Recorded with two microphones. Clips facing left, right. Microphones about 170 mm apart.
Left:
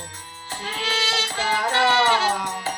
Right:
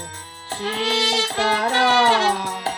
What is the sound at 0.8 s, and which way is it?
Music, 40° right (ahead or behind).